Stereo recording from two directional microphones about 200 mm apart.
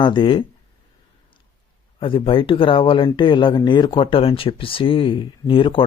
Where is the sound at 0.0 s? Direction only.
25° left (ahead or behind).